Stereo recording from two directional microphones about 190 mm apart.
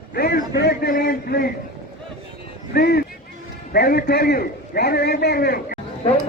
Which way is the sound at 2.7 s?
60° left (ahead or behind).